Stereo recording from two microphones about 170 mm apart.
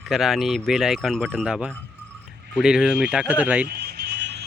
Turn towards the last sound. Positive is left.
turn(degrees=-80)